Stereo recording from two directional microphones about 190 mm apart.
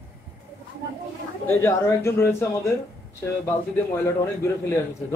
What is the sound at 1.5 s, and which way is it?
A man's voice, 15° left (ahead or behind).